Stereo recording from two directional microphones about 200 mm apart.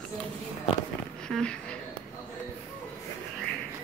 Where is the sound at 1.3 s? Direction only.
5° left (ahead or behind).